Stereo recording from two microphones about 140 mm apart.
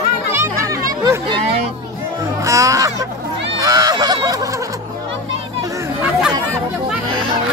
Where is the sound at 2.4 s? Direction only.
25° right (ahead or behind).